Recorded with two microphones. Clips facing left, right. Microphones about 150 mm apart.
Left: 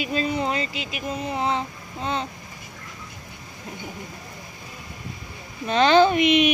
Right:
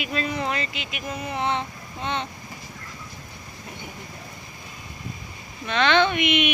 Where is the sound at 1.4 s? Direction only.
35° left (ahead or behind).